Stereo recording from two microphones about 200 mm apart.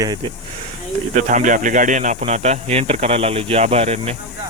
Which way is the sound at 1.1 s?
40° right (ahead or behind).